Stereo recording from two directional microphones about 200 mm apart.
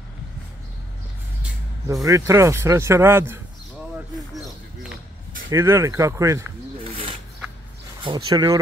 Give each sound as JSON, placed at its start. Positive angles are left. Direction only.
{"t": 2.0, "sound": "speech", "side_deg": -15}
{"t": 5.5, "sound": "speech", "side_deg": -15}
{"t": 6.8, "sound": "a sound", "side_deg": -30}
{"t": 8.0, "sound": "speech", "side_deg": -25}